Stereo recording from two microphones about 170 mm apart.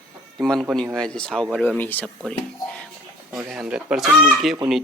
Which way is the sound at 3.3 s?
5° right (ahead or behind).